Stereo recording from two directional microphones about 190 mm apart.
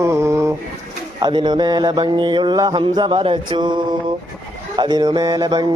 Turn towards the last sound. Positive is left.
turn(degrees=-20)  # may be behind; listen again after turning